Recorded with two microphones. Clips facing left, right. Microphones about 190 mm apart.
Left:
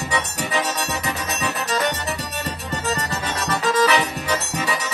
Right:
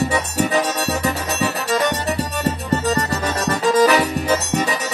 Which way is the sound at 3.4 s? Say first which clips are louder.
Right 4 dB; 45° right (ahead or behind).